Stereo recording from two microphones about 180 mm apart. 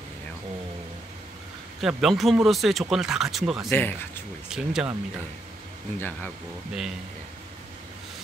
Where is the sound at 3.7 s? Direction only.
10° left (ahead or behind).